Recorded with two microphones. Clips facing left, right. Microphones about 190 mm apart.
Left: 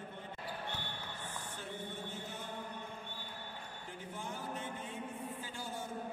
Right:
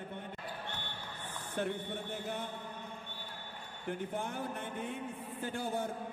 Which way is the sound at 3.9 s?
60° right (ahead or behind).